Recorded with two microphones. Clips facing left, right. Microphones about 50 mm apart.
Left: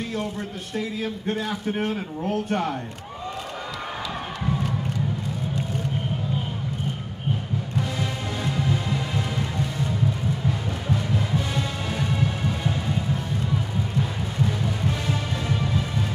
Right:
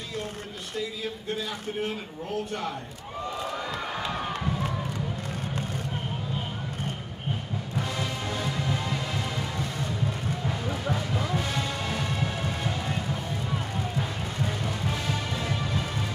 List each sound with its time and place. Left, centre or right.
1.8 s a man's voice: left
8.0 s music: centre
10.9 s music: centre
11.9 s music: centre
15.0 s music: centre